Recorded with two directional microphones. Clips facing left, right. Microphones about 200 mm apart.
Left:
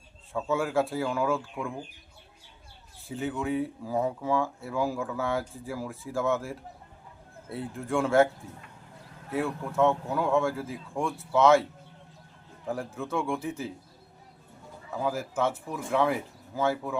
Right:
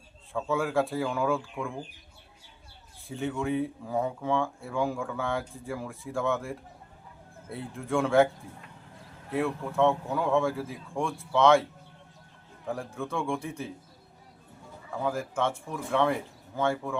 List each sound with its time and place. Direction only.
0.3 s speech: centre (ahead or behind)
3.0 s speech: centre (ahead or behind)
9.3 s speech: centre (ahead or behind)
12.6 s speech: centre (ahead or behind)
14.8 s speech: 5° left (ahead or behind)